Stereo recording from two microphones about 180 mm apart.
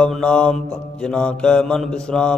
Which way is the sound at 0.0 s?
5° left (ahead or behind).